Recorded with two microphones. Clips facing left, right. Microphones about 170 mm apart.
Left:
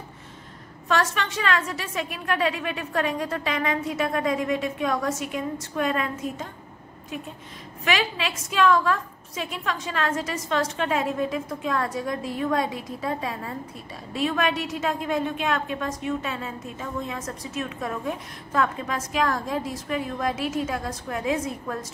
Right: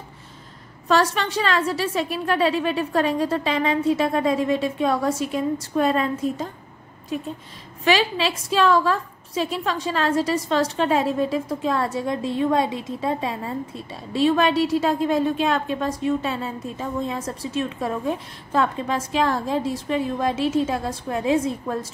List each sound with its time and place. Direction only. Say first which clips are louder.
0.8 s a woman's voice: right 4 dB; 35° right (ahead or behind)
7.8 s a woman's voice: right 6 dB; 30° right (ahead or behind)